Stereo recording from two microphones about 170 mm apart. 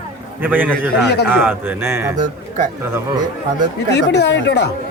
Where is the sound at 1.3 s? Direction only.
10° right (ahead or behind).